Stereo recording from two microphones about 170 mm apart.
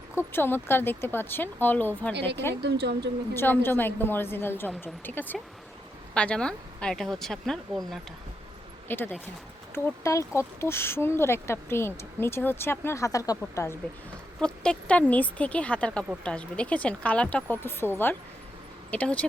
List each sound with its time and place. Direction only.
0.2 s speech: 15° left (ahead or behind)
2.6 s a woman's voice: 80° right
3.3 s speech: 10° left (ahead or behind)
8.9 s speech: 10° left (ahead or behind)
14.4 s speech: 5° left (ahead or behind)